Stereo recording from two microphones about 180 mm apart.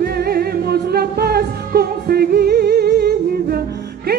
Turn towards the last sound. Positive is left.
turn(degrees=-60)  # may be behind; listen again after turning